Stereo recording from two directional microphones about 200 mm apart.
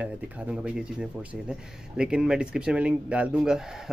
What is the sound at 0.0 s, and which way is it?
Speech, 5° right (ahead or behind).